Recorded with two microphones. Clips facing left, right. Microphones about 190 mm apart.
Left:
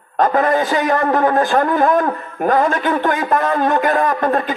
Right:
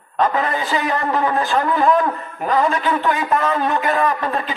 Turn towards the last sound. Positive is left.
turn(degrees=50)  # may be behind; listen again after turning